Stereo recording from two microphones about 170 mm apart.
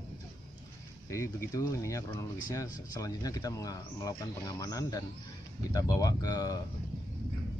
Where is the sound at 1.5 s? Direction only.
20° left (ahead or behind).